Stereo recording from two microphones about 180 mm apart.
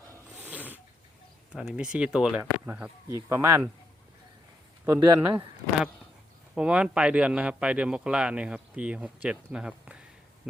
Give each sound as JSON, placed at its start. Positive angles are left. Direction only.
{"t": 0.4, "sound": "snort", "side_deg": -10}
{"t": 1.5, "sound": "a man's voice", "side_deg": -5}
{"t": 4.9, "sound": "speech", "side_deg": -15}
{"t": 6.5, "sound": "a man's voice", "side_deg": -5}